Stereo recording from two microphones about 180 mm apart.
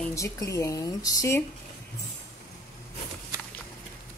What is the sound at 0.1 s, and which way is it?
A woman's voice, 15° left (ahead or behind).